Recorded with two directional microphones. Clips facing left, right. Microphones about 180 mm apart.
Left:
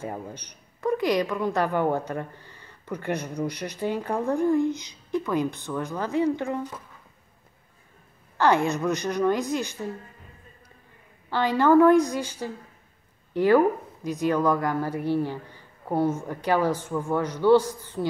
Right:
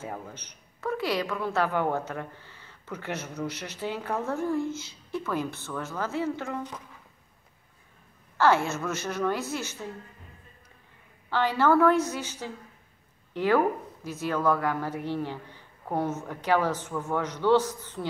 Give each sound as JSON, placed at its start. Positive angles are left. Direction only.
{"t": 0.0, "sound": "speech", "side_deg": 10}
{"t": 8.4, "sound": "speech", "side_deg": 15}
{"t": 11.2, "sound": "speech", "side_deg": 15}